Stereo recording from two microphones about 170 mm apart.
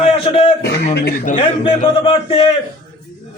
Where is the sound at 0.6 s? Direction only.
75° left (ahead or behind).